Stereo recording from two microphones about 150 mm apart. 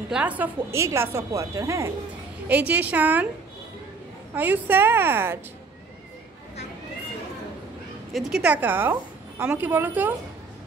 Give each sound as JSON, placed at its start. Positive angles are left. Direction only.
{"t": 0.1, "sound": "a woman's voice", "side_deg": -10}
{"t": 4.4, "sound": "a woman's voice", "side_deg": -15}
{"t": 8.1, "sound": "a woman's voice", "side_deg": -5}